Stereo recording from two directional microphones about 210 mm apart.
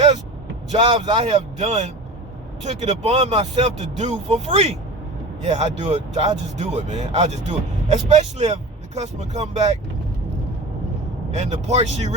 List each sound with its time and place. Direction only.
0.7 s speech: 30° right (ahead or behind)
11.3 s speech: 35° right (ahead or behind)